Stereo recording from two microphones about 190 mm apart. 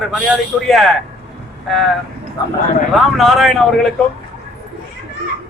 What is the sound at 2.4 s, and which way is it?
Speech, 20° left (ahead or behind).